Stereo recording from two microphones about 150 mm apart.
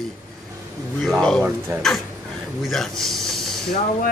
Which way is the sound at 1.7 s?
15° right (ahead or behind).